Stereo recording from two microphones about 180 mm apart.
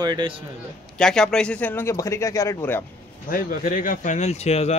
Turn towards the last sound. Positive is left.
turn(degrees=35)  # may be behind; listen again after turning